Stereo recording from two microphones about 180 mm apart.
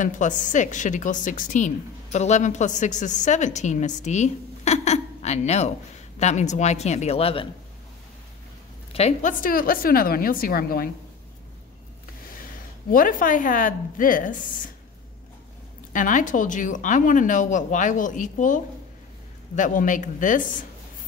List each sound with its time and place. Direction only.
0.0 s a woman's voice: 45° left (ahead or behind)
8.9 s speech: 40° left (ahead or behind)
12.9 s speech: 50° left (ahead or behind)
15.9 s speech: 45° left (ahead or behind)